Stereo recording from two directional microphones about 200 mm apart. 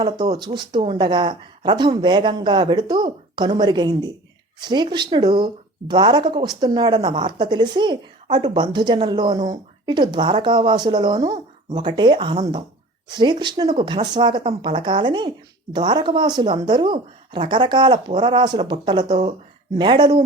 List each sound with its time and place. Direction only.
0.0 s speech: 20° right (ahead or behind)